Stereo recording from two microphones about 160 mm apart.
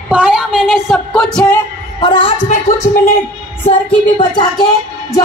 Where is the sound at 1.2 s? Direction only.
10° left (ahead or behind).